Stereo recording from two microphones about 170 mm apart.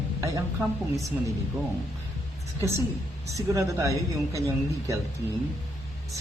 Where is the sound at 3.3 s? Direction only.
20° right (ahead or behind).